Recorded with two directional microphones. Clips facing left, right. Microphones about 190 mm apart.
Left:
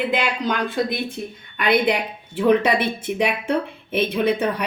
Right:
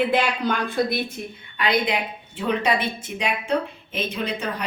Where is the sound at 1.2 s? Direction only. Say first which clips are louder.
Left 3 dB; 35° left (ahead or behind).